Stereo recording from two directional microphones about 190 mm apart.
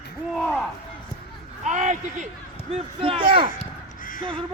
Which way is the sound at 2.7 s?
30° right (ahead or behind).